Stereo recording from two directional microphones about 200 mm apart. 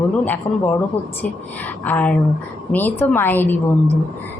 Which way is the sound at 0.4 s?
15° left (ahead or behind).